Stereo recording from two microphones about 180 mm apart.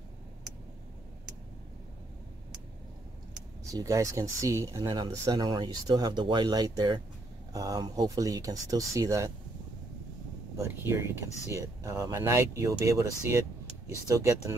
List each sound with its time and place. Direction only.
3.7 s speech: 20° right (ahead or behind)
10.6 s speech: 15° right (ahead or behind)